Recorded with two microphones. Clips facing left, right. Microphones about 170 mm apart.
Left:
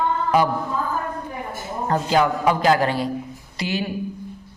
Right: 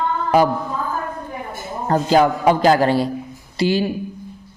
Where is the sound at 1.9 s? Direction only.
35° right (ahead or behind).